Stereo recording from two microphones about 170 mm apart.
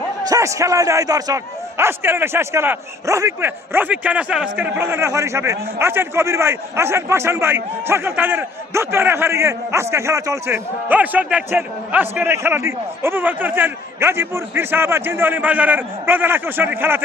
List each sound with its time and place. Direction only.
0.3 s a man's voice: 20° right (ahead or behind)